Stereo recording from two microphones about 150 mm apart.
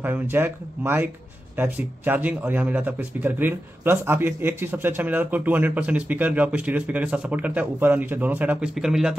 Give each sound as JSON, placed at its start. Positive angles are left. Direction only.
{"t": 0.0, "sound": "speech", "side_deg": -15}